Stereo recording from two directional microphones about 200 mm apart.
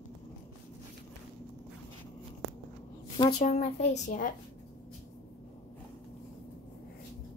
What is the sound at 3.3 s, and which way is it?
Speech, 35° left (ahead or behind).